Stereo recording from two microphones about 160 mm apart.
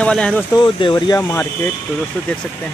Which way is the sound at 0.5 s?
30° left (ahead or behind).